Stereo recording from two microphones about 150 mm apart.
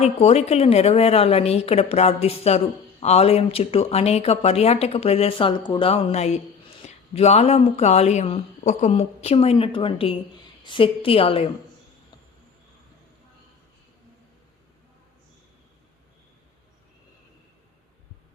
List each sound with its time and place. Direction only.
0.0 s a woman's voice: 45° left (ahead or behind)